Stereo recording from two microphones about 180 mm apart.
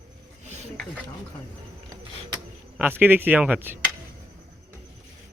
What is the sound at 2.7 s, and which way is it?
Speech, 10° right (ahead or behind).